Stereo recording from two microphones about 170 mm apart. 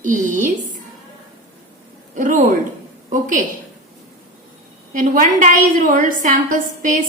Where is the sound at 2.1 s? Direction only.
50° right (ahead or behind).